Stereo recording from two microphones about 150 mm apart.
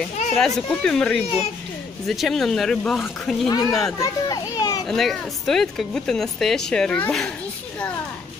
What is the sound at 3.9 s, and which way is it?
Children playing, 25° left (ahead or behind).